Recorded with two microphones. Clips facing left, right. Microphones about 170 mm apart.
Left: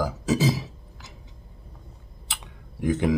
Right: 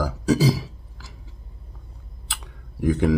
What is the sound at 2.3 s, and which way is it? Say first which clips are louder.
Tick-tock: right 1 dB; centre (ahead or behind).